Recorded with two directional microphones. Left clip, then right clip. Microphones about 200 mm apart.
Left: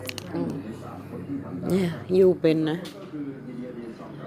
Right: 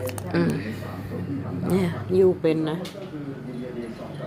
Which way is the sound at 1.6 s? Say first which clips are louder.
Right 1 dB; 15° left (ahead or behind).